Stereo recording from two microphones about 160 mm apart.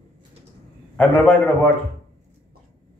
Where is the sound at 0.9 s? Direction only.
10° left (ahead or behind).